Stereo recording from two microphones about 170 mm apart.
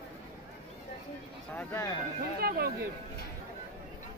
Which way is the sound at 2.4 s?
65° right (ahead or behind).